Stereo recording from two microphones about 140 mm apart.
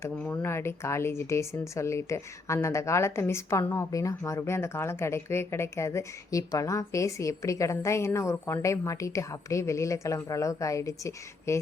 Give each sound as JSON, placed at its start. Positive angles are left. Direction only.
{"t": 0.3, "sound": "speech", "side_deg": 20}